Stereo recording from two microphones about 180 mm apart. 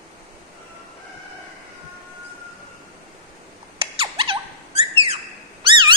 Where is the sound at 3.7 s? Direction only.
30° right (ahead or behind).